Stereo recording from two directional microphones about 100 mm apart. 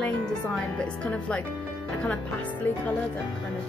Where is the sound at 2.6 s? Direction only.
15° left (ahead or behind).